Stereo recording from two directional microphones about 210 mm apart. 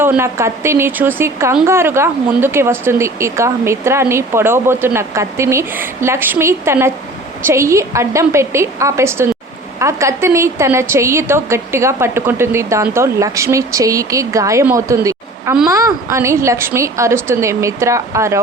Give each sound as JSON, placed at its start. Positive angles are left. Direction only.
{"t": 0.0, "sound": "speech", "side_deg": -10}